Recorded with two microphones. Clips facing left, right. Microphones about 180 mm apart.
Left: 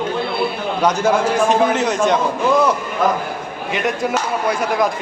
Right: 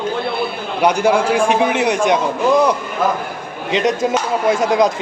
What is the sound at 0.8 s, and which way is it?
A man's voice, 10° right (ahead or behind).